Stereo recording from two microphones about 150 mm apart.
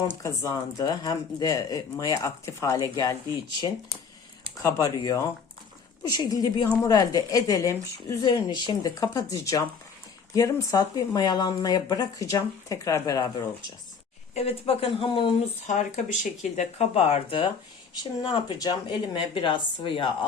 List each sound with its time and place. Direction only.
0.2 s speech: 20° left (ahead or behind)
4.6 s speech: 20° left (ahead or behind)
14.3 s speech: 40° left (ahead or behind)
15.6 s speech: 55° left (ahead or behind); by 20.1 s 35° left (ahead or behind)